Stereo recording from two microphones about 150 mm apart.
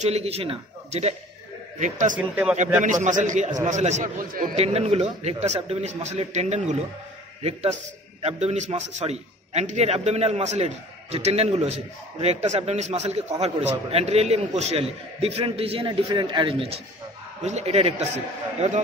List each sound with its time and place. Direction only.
0.0 s a man's voice: 45° right (ahead or behind)
1.8 s a man's voice: 55° right (ahead or behind)
2.1 s speech: 10° right (ahead or behind)
2.8 s a man's voice: 55° right (ahead or behind)
4.2 s a man's voice: 70° right (ahead or behind)
4.6 s a man's voice: 45° right (ahead or behind)